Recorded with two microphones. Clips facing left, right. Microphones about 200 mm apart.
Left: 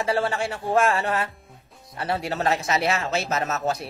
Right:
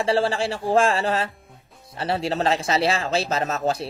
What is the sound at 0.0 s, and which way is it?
Speech, 30° right (ahead or behind).